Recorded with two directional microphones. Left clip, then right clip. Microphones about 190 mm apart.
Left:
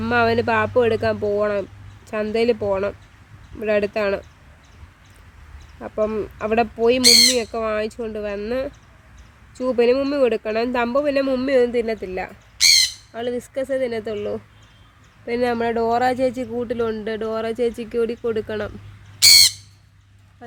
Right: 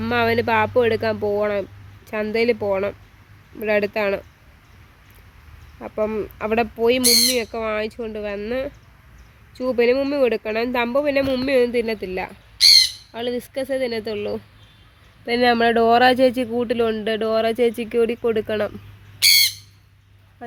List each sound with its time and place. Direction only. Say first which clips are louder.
0.0 s speech: left 1 dB; centre (ahead or behind)
5.8 s speech: left 1 dB; centre (ahead or behind); by 12.3 s 30° right (ahead or behind)
12.6 s bird: right 2 dB; 30° left (ahead or behind)
13.1 s speech: left 2 dB; 25° right (ahead or behind)
15.3 s speech: right 4 dB; 35° right (ahead or behind); by 18.7 s 20° right (ahead or behind)
19.2 s squawk: left 3 dB; 75° left (ahead or behind)